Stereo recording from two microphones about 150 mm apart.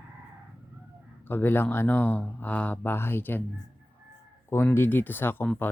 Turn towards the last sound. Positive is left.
turn(degrees=10)  # may be behind; listen again after turning